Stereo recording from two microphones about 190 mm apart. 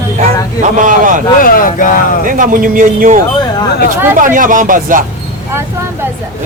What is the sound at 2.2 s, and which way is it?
Speech, 45° right (ahead or behind).